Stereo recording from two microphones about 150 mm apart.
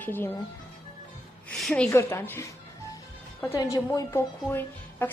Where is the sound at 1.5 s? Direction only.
5° left (ahead or behind).